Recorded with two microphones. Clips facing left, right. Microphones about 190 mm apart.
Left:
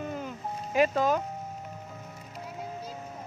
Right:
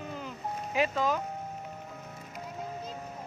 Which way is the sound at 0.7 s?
45° left (ahead or behind).